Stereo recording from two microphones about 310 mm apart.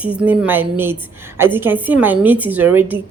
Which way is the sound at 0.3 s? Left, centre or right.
Centre.